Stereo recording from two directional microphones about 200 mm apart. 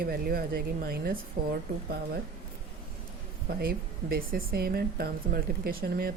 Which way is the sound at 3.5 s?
50° right (ahead or behind).